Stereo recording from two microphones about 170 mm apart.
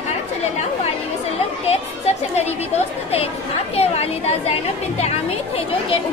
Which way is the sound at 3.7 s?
35° left (ahead or behind).